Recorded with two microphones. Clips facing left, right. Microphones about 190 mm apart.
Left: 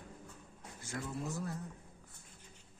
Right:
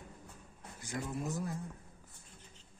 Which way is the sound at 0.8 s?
15° right (ahead or behind).